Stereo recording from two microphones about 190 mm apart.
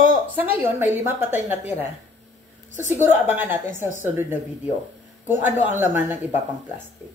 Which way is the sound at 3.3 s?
10° right (ahead or behind).